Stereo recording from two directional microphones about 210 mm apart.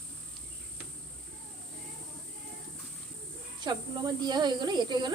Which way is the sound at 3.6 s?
20° right (ahead or behind).